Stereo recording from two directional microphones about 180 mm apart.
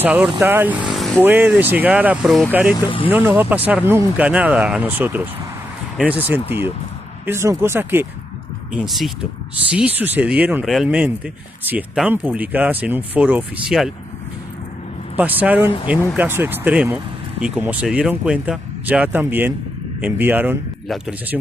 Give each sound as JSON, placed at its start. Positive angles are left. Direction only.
{"t": 0.0, "sound": "speech", "side_deg": -10}
{"t": 0.8, "sound": "vehicle", "side_deg": 0}
{"t": 1.2, "sound": "speech", "side_deg": -10}
{"t": 8.7, "sound": "speech", "side_deg": 0}
{"t": 15.1, "sound": "speech", "side_deg": -10}